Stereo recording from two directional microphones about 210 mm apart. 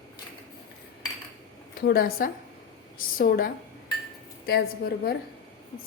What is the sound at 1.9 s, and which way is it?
A woman's voice, 45° left (ahead or behind).